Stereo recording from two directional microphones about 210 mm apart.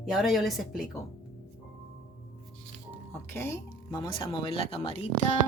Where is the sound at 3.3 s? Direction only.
10° left (ahead or behind).